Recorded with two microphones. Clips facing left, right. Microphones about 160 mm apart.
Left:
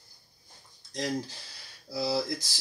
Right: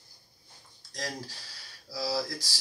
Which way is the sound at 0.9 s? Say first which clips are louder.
Left 6 dB; 20° left (ahead or behind).